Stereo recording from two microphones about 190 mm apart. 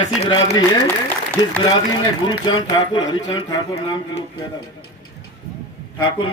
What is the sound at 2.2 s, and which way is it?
A man's voice, 25° left (ahead or behind).